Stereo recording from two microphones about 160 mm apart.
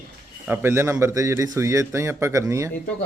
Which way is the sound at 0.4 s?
15° right (ahead or behind).